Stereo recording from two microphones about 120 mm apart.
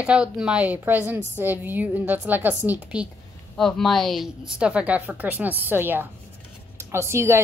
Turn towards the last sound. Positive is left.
turn(degrees=-20)  # may be behind; listen again after turning